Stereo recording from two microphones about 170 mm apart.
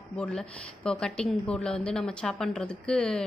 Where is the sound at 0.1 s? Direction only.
5° left (ahead or behind).